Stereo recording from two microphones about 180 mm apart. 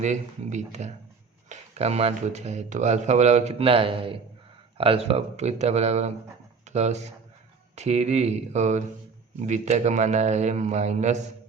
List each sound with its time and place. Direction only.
0.0 s speech: 40° right (ahead or behind)